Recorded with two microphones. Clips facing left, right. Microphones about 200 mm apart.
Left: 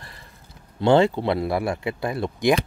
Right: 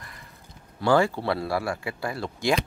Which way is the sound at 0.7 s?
20° left (ahead or behind).